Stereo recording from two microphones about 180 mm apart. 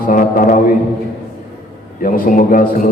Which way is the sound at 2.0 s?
50° left (ahead or behind).